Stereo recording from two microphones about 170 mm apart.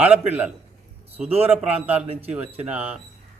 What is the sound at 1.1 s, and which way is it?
Speech, 35° right (ahead or behind).